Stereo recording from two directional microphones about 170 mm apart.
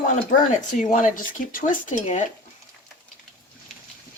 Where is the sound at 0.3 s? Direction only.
50° left (ahead or behind).